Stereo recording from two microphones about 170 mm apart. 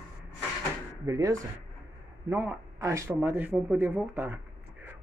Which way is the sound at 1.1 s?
20° right (ahead or behind).